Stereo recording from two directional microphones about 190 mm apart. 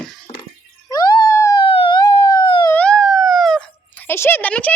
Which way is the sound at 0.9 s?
20° left (ahead or behind).